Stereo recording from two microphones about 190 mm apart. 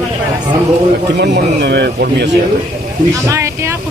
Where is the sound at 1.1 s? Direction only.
60° right (ahead or behind).